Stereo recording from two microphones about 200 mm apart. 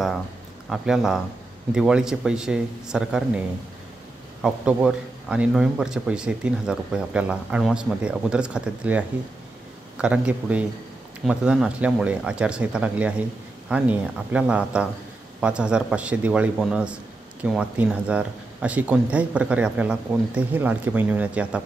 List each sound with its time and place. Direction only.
0.7 s a man's voice: centre (ahead or behind)